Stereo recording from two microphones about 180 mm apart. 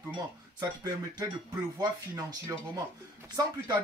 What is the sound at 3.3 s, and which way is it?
Speech, 20° right (ahead or behind).